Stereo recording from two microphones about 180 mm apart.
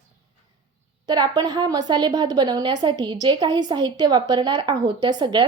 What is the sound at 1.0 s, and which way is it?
A woman's voice, 20° right (ahead or behind).